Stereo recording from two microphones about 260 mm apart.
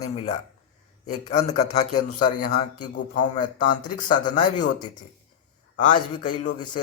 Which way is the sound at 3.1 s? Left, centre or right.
Left.